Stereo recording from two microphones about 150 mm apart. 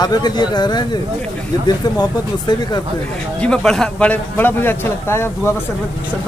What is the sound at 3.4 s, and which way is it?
Speech, 5° left (ahead or behind).